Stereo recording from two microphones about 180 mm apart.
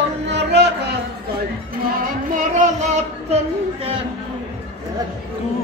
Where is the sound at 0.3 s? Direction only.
70° right (ahead or behind).